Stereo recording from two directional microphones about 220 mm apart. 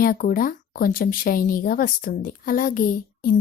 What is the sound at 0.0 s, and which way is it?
A woman's voice, 40° left (ahead or behind).